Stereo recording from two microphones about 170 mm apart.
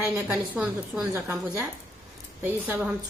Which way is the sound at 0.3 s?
5° right (ahead or behind).